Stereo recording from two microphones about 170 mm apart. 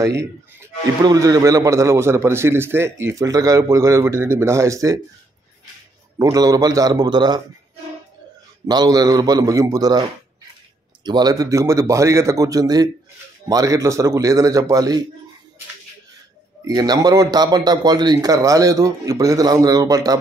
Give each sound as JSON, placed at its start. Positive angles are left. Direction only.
{"t": 0.6, "sound": "a man's voice", "side_deg": -20}
{"t": 6.1, "sound": "a man's voice", "side_deg": -20}
{"t": 8.6, "sound": "a man's voice", "side_deg": -25}
{"t": 11.1, "sound": "a man's voice", "side_deg": -25}
{"t": 16.6, "sound": "a man's voice", "side_deg": -20}